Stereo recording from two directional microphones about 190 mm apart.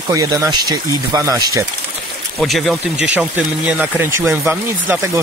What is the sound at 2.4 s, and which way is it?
Speech, centre (ahead or behind).